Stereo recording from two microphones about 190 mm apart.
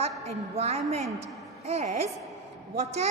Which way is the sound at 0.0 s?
35° right (ahead or behind).